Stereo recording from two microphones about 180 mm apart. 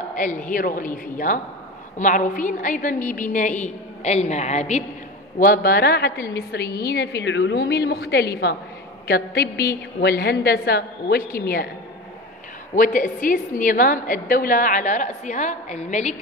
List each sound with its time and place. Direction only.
0.1 s a woman's voice: 45° left (ahead or behind)
5.4 s a woman's voice: 55° left (ahead or behind)
6.1 s a woman's voice: 15° left (ahead or behind)
6.9 s a woman's voice: 65° left (ahead or behind)
12.7 s a woman's voice: 45° left (ahead or behind)